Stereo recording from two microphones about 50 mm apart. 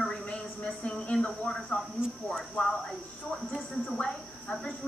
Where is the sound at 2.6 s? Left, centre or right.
Left.